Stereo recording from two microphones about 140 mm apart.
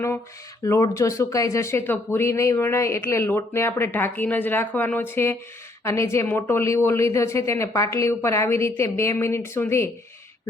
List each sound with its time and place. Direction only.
0.6 s speech: 25° left (ahead or behind)